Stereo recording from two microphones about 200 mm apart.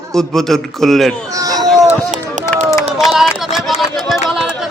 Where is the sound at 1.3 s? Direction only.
20° right (ahead or behind).